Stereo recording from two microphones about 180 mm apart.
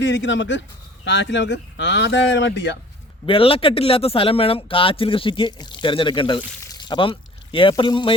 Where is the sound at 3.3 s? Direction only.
30° left (ahead or behind).